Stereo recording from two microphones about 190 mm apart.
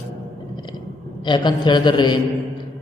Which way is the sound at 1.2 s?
25° left (ahead or behind).